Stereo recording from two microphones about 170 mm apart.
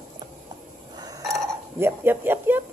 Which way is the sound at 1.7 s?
15° right (ahead or behind).